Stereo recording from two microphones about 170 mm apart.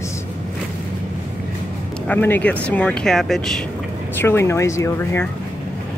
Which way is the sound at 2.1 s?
10° left (ahead or behind).